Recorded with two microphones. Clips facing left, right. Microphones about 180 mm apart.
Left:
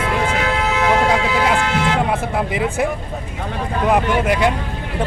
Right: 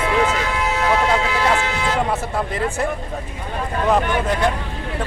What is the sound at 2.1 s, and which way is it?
Speech, 15° left (ahead or behind).